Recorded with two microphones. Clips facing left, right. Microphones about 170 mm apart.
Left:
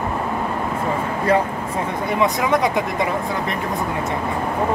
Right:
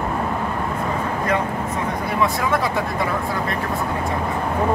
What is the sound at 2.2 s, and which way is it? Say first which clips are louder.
Speech: left 3 dB; 20° left (ahead or behind).